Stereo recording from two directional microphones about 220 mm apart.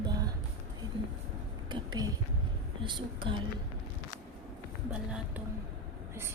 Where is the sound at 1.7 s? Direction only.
20° right (ahead or behind).